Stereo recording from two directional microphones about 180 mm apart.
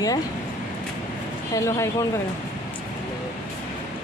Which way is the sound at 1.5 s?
15° left (ahead or behind).